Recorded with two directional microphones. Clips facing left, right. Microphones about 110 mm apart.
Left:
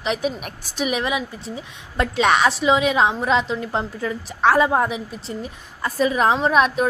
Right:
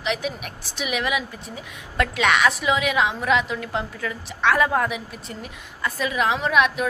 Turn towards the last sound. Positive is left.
turn(degrees=35)  # may be behind; listen again after turning